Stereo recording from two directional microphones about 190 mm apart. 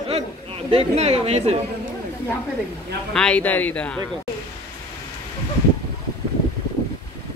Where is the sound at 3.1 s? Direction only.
5° left (ahead or behind).